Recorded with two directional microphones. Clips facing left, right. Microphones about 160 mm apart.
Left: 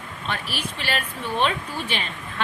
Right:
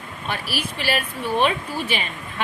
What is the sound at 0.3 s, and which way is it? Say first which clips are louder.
A woman's voice: right 2 dB; 10° right (ahead or behind).